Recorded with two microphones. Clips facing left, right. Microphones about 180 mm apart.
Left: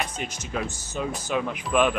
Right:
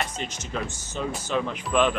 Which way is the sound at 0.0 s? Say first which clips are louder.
Even; 10° left (ahead or behind).